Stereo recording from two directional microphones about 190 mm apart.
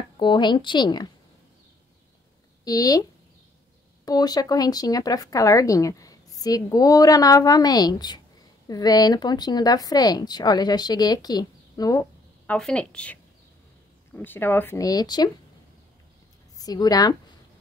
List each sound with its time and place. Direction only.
0.2 s speech: 25° left (ahead or behind)
2.6 s a woman's voice: 20° left (ahead or behind)
12.5 s speech: 5° left (ahead or behind); by 15.3 s 20° left (ahead or behind)
16.5 s a woman's voice: 20° left (ahead or behind)